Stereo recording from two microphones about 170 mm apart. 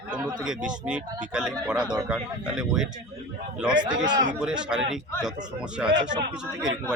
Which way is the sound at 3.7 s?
25° right (ahead or behind).